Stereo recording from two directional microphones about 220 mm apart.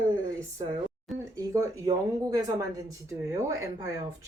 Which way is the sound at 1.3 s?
15° right (ahead or behind).